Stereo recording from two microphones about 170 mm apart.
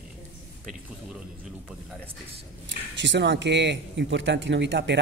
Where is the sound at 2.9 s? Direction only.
90° right.